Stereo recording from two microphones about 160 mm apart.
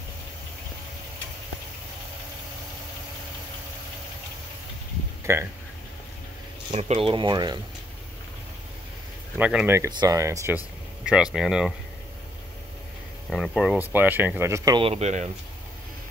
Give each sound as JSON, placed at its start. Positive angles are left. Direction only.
{"t": 5.2, "sound": "speech", "side_deg": -15}
{"t": 6.7, "sound": "speech", "side_deg": -40}
{"t": 9.4, "sound": "speech", "side_deg": -5}
{"t": 9.8, "sound": "speech", "side_deg": -25}
{"t": 11.3, "sound": "speech", "side_deg": 0}
{"t": 13.3, "sound": "speech", "side_deg": 5}
{"t": 13.7, "sound": "speech", "side_deg": -10}
{"t": 14.8, "sound": "speech", "side_deg": -40}